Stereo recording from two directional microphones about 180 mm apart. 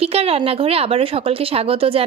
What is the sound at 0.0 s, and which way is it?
A woman's voice, 35° right (ahead or behind).